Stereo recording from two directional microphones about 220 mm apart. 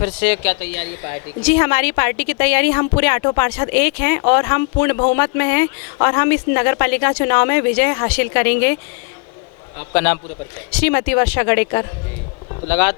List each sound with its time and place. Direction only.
0.0 s speech: 10° left (ahead or behind)
9.9 s speech: 10° left (ahead or behind)